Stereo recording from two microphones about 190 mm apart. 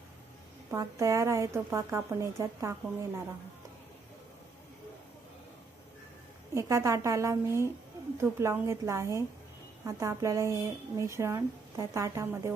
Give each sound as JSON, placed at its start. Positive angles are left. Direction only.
{"t": 0.7, "sound": "speech", "side_deg": -15}
{"t": 6.5, "sound": "speech", "side_deg": -15}